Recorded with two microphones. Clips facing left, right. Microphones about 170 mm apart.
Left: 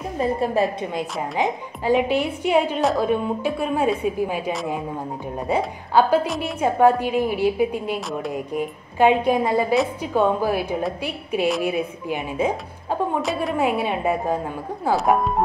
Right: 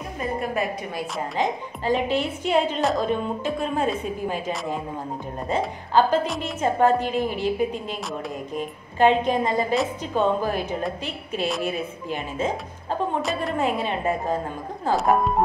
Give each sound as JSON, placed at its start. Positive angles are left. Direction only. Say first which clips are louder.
{"t": 0.2, "sound": "a woman's voice", "louder": "left 6 dB", "side_deg": 30}
{"t": 1.4, "sound": "a woman's voice", "louder": "left 1 dB", "side_deg": 15}
{"t": 5.5, "sound": "a woman's voice", "louder": "left 2 dB", "side_deg": 10}
{"t": 13.2, "sound": "a woman's voice", "louder": "left 2 dB", "side_deg": 0}
{"t": 13.6, "sound": "a woman's voice", "louder": "left 3 dB", "side_deg": 15}